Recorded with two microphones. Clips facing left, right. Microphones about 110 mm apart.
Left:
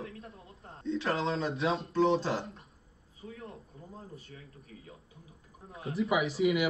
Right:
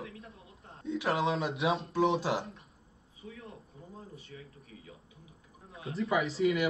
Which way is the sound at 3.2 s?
35° left (ahead or behind).